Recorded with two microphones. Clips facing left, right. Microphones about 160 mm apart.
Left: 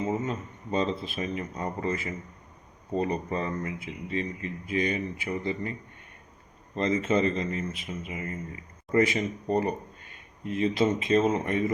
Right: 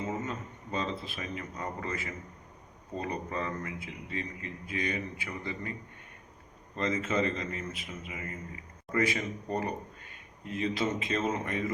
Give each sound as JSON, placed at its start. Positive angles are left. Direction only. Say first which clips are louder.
{"t": 0.0, "sound": "speech", "louder": "left 5 dB", "side_deg": 20}
{"t": 6.7, "sound": "speech", "louder": "left 5 dB", "side_deg": 25}